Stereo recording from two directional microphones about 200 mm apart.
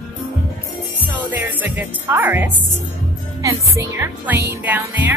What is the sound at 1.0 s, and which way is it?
Music, 10° right (ahead or behind).